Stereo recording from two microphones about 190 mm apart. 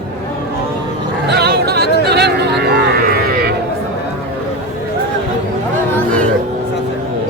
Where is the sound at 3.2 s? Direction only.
55° right (ahead or behind).